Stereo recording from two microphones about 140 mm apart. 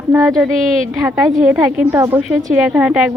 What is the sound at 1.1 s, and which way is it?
Speech, 25° right (ahead or behind).